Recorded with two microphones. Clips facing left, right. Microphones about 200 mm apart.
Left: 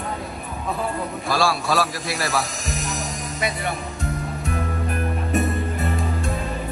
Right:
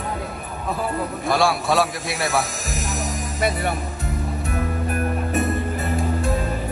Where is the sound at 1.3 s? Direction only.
20° right (ahead or behind).